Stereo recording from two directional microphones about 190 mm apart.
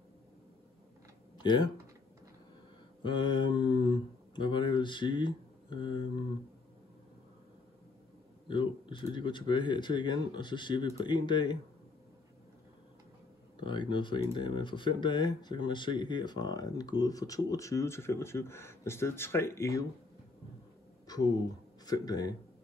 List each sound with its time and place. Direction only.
1.4 s speech: 25° left (ahead or behind)
3.0 s speech: 25° left (ahead or behind)
8.5 s speech: 25° left (ahead or behind)
13.6 s speech: 25° left (ahead or behind)
21.1 s speech: 20° left (ahead or behind)